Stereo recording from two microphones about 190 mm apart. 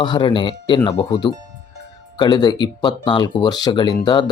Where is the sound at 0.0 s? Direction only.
25° left (ahead or behind).